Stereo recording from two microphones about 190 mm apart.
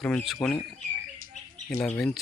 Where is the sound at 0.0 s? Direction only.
5° left (ahead or behind).